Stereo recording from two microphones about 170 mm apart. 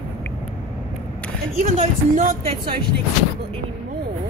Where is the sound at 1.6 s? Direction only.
50° right (ahead or behind).